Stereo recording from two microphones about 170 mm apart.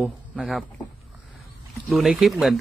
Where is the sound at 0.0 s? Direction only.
Centre (ahead or behind).